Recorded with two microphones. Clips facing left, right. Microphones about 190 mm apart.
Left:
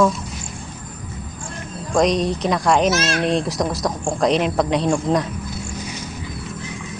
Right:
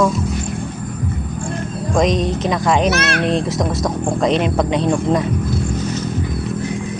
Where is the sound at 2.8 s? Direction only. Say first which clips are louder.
Right 2 dB; 60° right (ahead or behind).